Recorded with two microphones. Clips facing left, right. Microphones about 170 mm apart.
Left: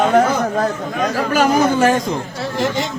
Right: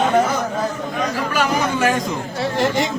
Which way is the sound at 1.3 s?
40° left (ahead or behind).